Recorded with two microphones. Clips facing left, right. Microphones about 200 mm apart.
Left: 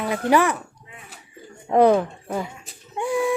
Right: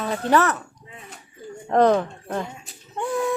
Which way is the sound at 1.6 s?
10° left (ahead or behind).